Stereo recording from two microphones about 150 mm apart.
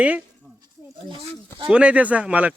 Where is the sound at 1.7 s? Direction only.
10° right (ahead or behind).